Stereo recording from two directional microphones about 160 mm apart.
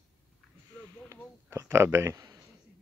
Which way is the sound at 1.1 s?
15° right (ahead or behind).